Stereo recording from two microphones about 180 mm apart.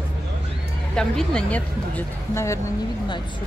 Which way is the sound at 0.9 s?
5° left (ahead or behind).